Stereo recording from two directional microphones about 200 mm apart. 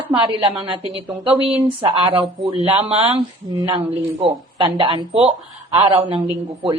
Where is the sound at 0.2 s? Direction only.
25° right (ahead or behind).